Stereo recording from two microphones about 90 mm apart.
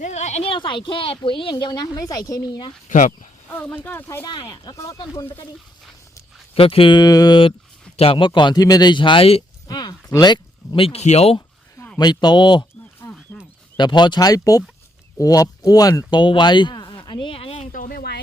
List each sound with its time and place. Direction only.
0.4 s speech: 65° left (ahead or behind); by 2.6 s 45° left (ahead or behind)
3.8 s speech: 25° left (ahead or behind)
6.5 s speech: 90° left; by 7.3 s 50° left (ahead or behind)
7.9 s speech: 80° left
9.6 s a sound: 50° left (ahead or behind)
10.8 s speech: 90° left
11.9 s speech: 50° left (ahead or behind)
13.0 s wild animals: 40° left (ahead or behind)
13.7 s speech: 55° left (ahead or behind); by 17.6 s 90° left